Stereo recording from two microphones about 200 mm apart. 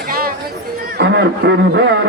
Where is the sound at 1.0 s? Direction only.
60° right (ahead or behind).